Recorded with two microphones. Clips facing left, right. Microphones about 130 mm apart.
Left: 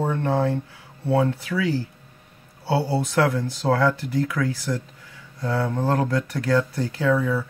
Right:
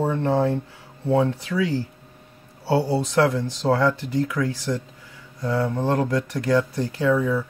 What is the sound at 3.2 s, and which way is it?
Speech, 15° right (ahead or behind).